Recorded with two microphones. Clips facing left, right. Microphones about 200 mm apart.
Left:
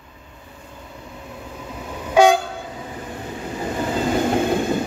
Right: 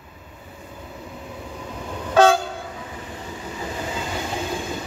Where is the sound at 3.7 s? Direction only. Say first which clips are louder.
Left 10 dB; 55° left (ahead or behind).